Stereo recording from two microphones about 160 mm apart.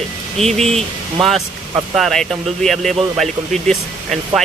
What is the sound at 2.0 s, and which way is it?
Speech, centre (ahead or behind).